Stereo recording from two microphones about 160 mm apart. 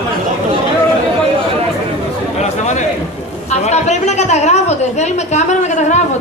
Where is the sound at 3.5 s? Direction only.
45° left (ahead or behind).